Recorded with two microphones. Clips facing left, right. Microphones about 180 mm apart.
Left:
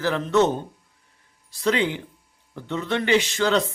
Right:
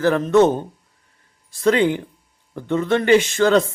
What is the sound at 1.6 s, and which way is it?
A man's voice, 50° right (ahead or behind).